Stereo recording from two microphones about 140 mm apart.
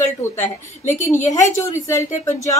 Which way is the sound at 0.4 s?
60° left (ahead or behind).